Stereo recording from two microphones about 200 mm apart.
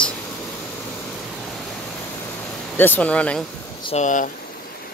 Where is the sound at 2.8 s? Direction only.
10° left (ahead or behind).